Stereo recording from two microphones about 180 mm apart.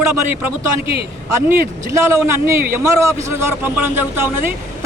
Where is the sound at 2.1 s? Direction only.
15° right (ahead or behind).